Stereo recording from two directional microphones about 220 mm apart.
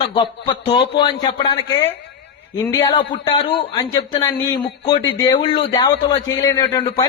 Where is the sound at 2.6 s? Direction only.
15° left (ahead or behind).